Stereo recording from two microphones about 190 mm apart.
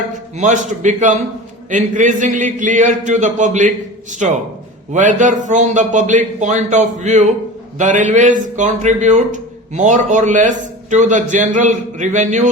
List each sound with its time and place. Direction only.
0.1 s a man's voice: 40° right (ahead or behind)
4.9 s a man's voice: 40° right (ahead or behind)